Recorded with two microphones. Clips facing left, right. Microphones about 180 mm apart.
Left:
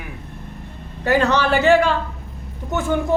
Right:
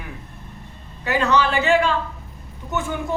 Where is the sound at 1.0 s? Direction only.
40° left (ahead or behind).